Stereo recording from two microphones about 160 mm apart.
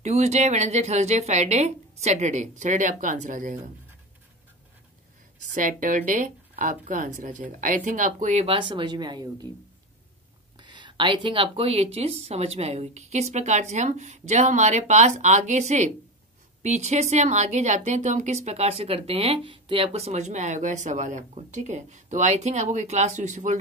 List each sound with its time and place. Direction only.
0.0 s speech: 45° right (ahead or behind)
5.5 s speech: 55° right (ahead or behind)
8.5 s speech: 30° right (ahead or behind)
10.6 s speech: 30° right (ahead or behind); by 23.6 s 50° right (ahead or behind)